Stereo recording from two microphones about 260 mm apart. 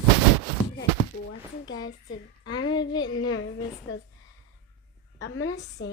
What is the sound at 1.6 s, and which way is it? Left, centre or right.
Speech, left.